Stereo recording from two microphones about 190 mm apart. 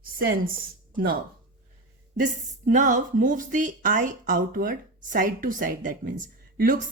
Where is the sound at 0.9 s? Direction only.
50° right (ahead or behind).